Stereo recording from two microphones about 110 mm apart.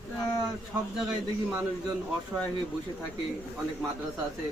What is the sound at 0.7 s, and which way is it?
Speech, 15° right (ahead or behind).